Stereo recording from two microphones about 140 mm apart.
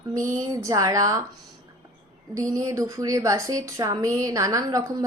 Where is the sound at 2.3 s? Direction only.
25° right (ahead or behind).